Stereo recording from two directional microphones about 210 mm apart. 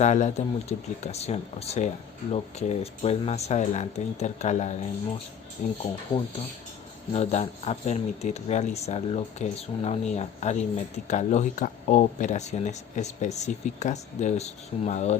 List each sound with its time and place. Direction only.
0.0 s speech: 35° left (ahead or behind)
6.1 s speech: 20° left (ahead or behind)
7.1 s speech: 30° left (ahead or behind)